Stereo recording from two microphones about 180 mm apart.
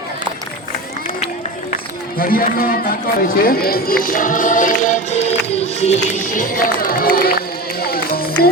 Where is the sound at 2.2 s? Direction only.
55° left (ahead or behind).